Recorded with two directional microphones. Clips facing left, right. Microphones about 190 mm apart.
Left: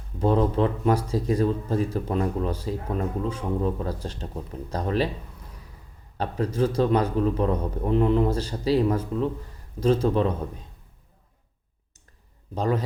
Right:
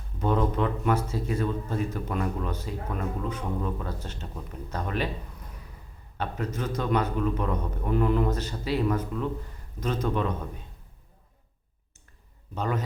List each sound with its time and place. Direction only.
0.2 s speech: 30° left (ahead or behind)
6.1 s speech: 30° left (ahead or behind)
12.5 s speech: 35° left (ahead or behind)